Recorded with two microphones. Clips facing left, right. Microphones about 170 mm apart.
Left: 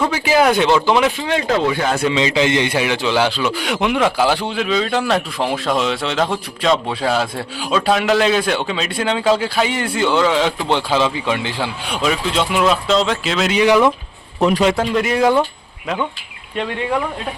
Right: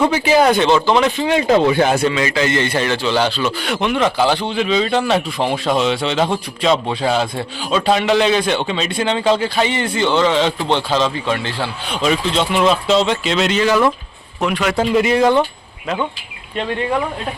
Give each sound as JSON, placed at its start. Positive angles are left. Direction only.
{"t": 0.1, "sound": "a man's voice", "side_deg": 5}
{"t": 1.2, "sound": "speech", "side_deg": -15}
{"t": 2.0, "sound": "a man's voice", "side_deg": 20}
{"t": 13.6, "sound": "speech", "side_deg": 15}
{"t": 14.4, "sound": "a man's voice", "side_deg": 30}
{"t": 14.8, "sound": "a man's voice", "side_deg": 0}